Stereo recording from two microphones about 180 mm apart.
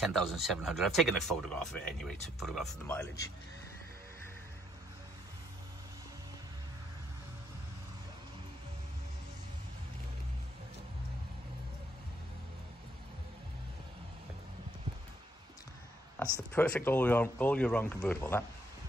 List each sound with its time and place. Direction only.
0.0 s speech: centre (ahead or behind)
2.9 s speech: 15° left (ahead or behind)
16.2 s speech: 10° left (ahead or behind)